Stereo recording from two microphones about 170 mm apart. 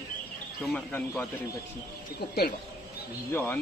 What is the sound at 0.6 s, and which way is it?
Speech, 10° left (ahead or behind).